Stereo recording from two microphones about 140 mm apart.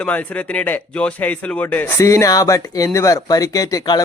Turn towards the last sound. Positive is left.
turn(degrees=25)  # may be behind; listen again after turning